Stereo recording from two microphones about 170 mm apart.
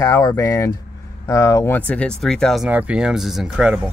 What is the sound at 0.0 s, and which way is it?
Speech, 20° left (ahead or behind).